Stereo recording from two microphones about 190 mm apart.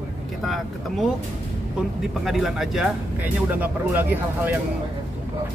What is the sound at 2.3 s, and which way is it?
Speech, centre (ahead or behind).